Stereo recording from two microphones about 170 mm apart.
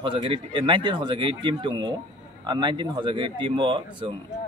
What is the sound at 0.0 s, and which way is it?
A man's voice, 30° right (ahead or behind).